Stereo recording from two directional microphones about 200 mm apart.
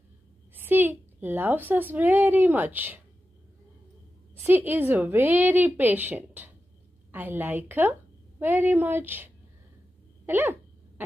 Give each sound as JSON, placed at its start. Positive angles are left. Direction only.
{"t": 0.7, "sound": "a woman's voice", "side_deg": -10}
{"t": 4.4, "sound": "a woman's voice", "side_deg": -10}